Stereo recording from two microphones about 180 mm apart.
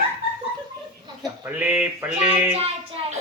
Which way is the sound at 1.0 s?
20° right (ahead or behind).